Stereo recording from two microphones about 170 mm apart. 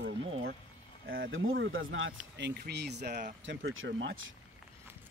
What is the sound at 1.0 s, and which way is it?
Speech, 80° right.